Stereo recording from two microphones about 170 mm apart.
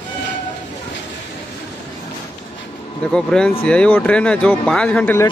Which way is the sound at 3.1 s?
5° left (ahead or behind).